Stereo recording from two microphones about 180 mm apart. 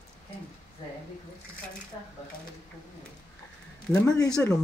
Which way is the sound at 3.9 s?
20° left (ahead or behind).